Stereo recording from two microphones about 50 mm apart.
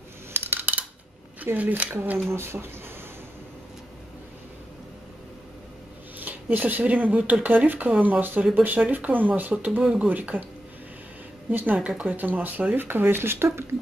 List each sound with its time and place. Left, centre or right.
0.3 s a sound: right
1.4 s speech: right
2.2 s speech: right
6.1 s speech: right
11.5 s speech: right